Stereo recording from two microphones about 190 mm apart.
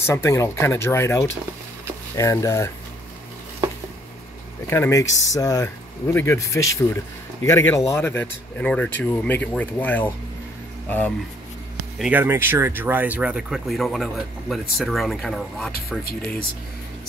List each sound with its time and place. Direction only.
0.0 s speech: 15° left (ahead or behind)
4.6 s speech: 15° left (ahead or behind)
12.0 s speech: 10° right (ahead or behind)